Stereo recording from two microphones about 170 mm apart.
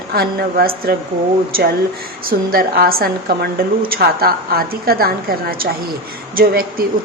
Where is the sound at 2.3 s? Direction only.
60° right (ahead or behind).